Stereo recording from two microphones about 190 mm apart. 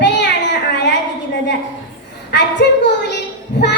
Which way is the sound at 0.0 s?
65° left (ahead or behind).